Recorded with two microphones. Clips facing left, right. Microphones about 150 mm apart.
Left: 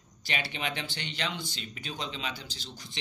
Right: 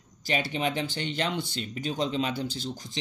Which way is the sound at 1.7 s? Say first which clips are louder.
Right 11 dB; 40° right (ahead or behind).